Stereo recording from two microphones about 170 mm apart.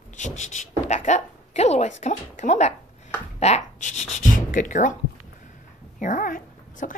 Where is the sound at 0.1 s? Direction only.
45° left (ahead or behind).